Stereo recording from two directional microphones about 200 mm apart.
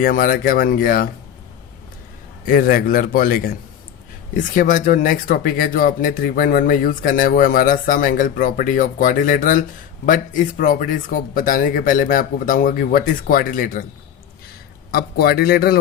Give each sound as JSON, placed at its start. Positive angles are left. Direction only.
{"t": 0.0, "sound": "speech", "side_deg": 45}
{"t": 2.5, "sound": "speech", "side_deg": 45}
{"t": 14.9, "sound": "speech", "side_deg": 50}